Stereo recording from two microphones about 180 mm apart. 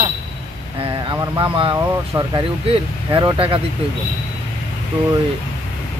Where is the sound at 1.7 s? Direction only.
15° right (ahead or behind).